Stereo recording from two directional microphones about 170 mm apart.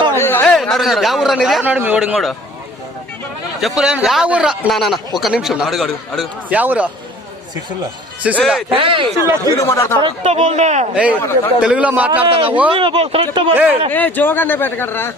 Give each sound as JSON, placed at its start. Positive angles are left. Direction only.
{"t": 0.1, "sound": "a sound", "side_deg": 15}
{"t": 0.5, "sound": "a man's voice", "side_deg": 0}
{"t": 3.6, "sound": "a man's voice", "side_deg": -5}
{"t": 8.4, "sound": "a man's voice", "side_deg": 0}
{"t": 8.7, "sound": "speech", "side_deg": -30}
{"t": 9.4, "sound": "speech", "side_deg": 20}
{"t": 10.0, "sound": "speech", "side_deg": -40}
{"t": 10.9, "sound": "a man's voice", "side_deg": -5}
{"t": 11.2, "sound": "speech", "side_deg": 15}
{"t": 11.6, "sound": "a man's voice", "side_deg": -5}
{"t": 12.7, "sound": "speech", "side_deg": -30}
{"t": 13.5, "sound": "a man's voice", "side_deg": -10}
{"t": 13.9, "sound": "speech", "side_deg": 10}